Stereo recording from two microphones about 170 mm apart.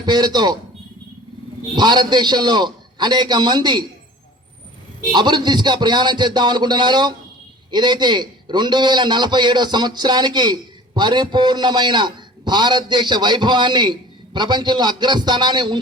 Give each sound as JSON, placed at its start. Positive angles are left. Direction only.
{"t": 0.0, "sound": "a man's voice", "side_deg": -25}
{"t": 1.7, "sound": "a man's voice", "side_deg": -25}
{"t": 5.1, "sound": "a man's voice", "side_deg": -25}